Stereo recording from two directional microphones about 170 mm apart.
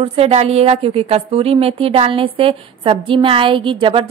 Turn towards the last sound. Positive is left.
turn(degrees=-30)  # may be behind; listen again after turning